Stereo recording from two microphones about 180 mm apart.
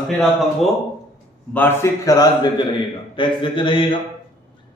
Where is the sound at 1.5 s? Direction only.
10° left (ahead or behind); by 4.0 s 30° left (ahead or behind).